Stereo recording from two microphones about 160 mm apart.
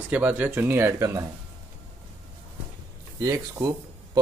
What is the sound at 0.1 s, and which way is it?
Speech, 10° right (ahead or behind).